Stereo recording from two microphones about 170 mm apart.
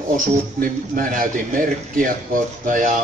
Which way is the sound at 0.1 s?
55° right (ahead or behind).